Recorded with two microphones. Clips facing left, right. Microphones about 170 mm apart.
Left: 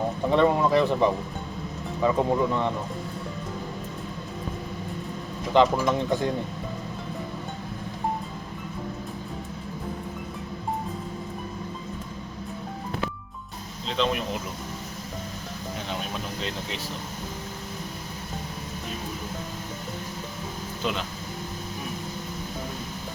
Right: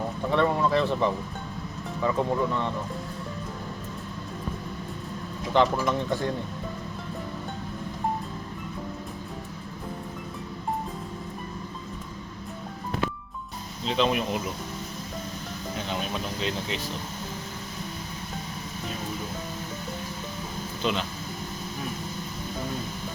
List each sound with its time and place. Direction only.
0.3 s speech: 15° left (ahead or behind)
5.5 s speech: 15° left (ahead or behind)
13.8 s speech: 5° right (ahead or behind)